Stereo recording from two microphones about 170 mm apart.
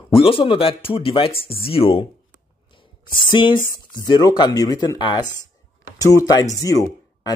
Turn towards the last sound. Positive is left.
turn(degrees=20)  # may be behind; listen again after turning